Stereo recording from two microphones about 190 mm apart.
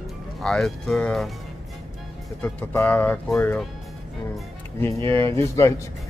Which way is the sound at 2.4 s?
10° left (ahead or behind).